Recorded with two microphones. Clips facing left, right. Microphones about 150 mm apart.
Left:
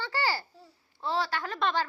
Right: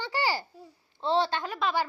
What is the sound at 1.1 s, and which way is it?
Speech, 25° right (ahead or behind).